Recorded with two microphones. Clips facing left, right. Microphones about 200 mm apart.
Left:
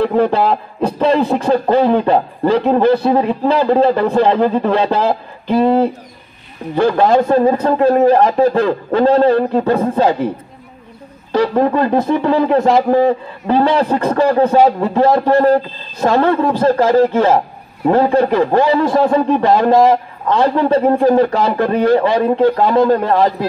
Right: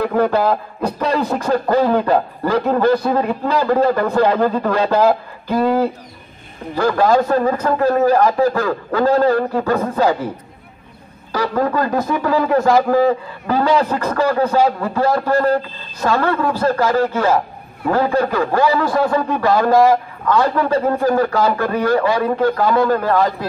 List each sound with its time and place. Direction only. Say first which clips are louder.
0.0 s speech: left 2 dB; 25° left (ahead or behind)
11.3 s speech: left 5 dB; 25° left (ahead or behind)